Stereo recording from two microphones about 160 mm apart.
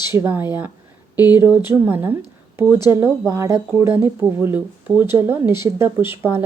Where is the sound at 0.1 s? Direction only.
15° right (ahead or behind).